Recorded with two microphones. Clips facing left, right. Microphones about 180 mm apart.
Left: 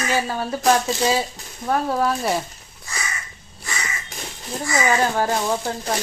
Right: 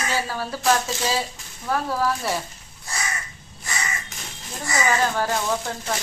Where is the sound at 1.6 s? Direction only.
25° left (ahead or behind).